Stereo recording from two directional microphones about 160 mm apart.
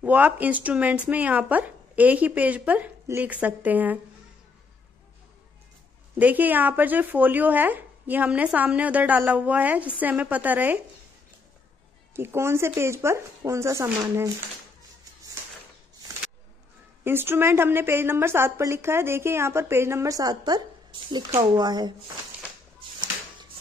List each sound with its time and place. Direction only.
0.0 s a woman's voice: 10° right (ahead or behind)
6.1 s a woman's voice: 10° right (ahead or behind)
12.2 s a woman's voice: 15° right (ahead or behind)
17.0 s a woman's voice: 15° right (ahead or behind)